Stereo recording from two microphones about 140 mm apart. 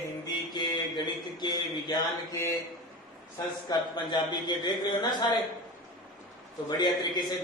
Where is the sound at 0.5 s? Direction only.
30° left (ahead or behind).